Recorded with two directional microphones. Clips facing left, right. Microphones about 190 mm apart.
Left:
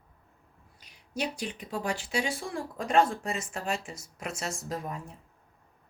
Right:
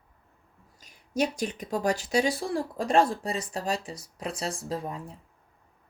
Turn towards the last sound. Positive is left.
turn(degrees=-30)  # may be behind; listen again after turning